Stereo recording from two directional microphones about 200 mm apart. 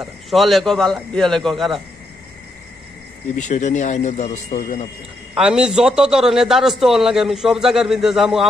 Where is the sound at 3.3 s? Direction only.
35° left (ahead or behind).